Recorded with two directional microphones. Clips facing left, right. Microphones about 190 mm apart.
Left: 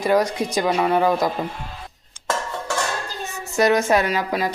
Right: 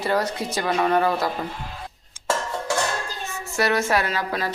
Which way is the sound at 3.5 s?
15° left (ahead or behind).